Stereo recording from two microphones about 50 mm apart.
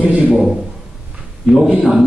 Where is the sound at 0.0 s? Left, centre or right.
Right.